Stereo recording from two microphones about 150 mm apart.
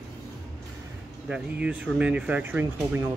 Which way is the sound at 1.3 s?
5° right (ahead or behind).